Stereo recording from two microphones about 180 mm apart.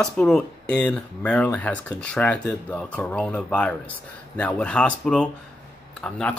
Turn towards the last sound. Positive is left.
turn(degrees=5)  # may be behind; listen again after turning